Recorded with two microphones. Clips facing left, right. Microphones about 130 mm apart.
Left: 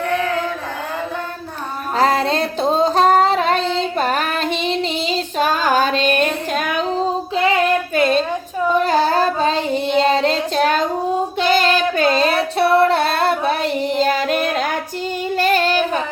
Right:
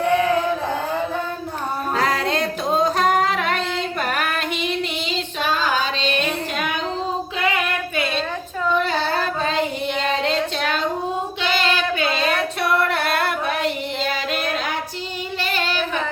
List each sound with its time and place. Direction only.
2.0 s female singing: 35° left (ahead or behind)
7.3 s female singing: 30° left (ahead or behind)
11.3 s child singing: 45° left (ahead or behind)
14.0 s music: 45° left (ahead or behind)
15.4 s singing: 45° left (ahead or behind)